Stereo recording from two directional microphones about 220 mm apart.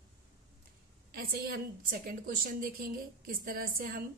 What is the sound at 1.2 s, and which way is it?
A woman's voice, 45° right (ahead or behind).